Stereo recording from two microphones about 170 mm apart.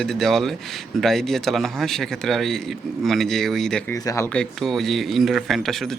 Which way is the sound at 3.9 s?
20° left (ahead or behind).